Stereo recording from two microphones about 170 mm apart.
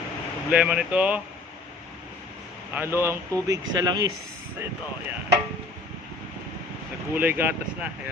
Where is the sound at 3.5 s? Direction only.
20° right (ahead or behind).